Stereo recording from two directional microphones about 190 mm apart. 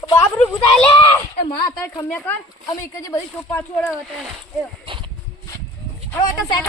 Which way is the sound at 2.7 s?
15° left (ahead or behind).